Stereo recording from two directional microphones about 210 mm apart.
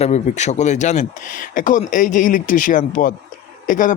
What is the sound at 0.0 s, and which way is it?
Speech, 35° left (ahead or behind).